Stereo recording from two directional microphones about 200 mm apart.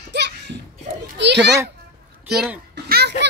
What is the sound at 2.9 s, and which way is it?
Music, 55° right (ahead or behind).